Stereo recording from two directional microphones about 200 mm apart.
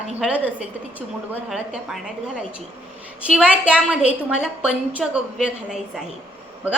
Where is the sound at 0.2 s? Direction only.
5° right (ahead or behind).